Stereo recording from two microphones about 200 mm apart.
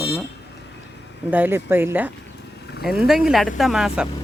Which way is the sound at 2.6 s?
55° left (ahead or behind).